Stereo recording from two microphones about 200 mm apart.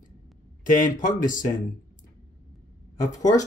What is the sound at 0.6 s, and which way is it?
Speech, 40° left (ahead or behind).